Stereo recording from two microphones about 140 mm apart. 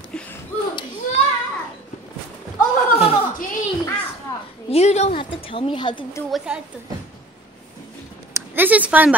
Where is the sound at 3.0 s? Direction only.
45° left (ahead or behind).